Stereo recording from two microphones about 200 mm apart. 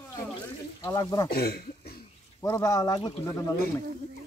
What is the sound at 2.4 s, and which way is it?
Speech, 15° left (ahead or behind).